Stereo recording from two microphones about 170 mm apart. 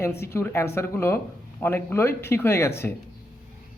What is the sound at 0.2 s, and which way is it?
Speech, 15° left (ahead or behind).